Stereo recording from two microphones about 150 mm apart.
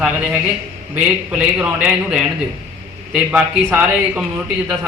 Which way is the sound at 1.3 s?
5° right (ahead or behind).